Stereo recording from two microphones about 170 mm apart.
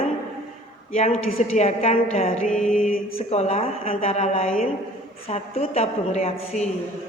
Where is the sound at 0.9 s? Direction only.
35° left (ahead or behind).